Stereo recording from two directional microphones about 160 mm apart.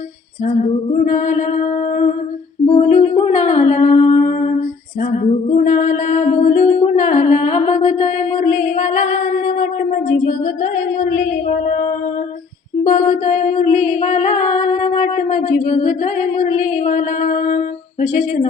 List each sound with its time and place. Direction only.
1.0 s music: 50° left (ahead or behind)
2.6 s music: 40° left (ahead or behind)
9.5 s a sound: 55° left (ahead or behind)
12.8 s music: 45° left (ahead or behind)